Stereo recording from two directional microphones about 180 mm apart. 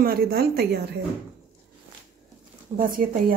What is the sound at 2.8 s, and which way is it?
Speech, 50° right (ahead or behind).